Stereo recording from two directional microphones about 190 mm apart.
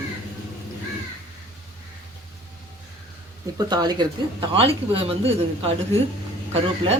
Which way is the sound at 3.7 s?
20° right (ahead or behind).